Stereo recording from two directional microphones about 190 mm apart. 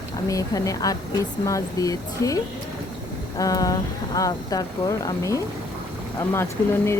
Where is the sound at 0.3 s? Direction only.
15° left (ahead or behind).